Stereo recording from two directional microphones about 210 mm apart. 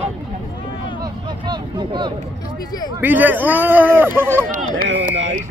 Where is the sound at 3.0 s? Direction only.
10° right (ahead or behind).